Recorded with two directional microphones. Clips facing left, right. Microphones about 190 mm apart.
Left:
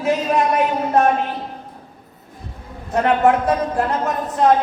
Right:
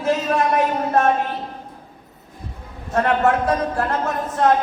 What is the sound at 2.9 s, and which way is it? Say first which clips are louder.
A woman's voice: left 2 dB; 15° left (ahead or behind).